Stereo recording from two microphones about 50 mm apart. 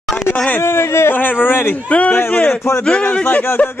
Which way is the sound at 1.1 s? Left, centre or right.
Left.